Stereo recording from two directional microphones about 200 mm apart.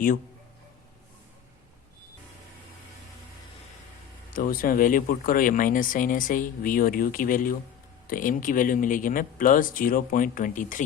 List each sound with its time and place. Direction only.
4.3 s speech: 45° left (ahead or behind)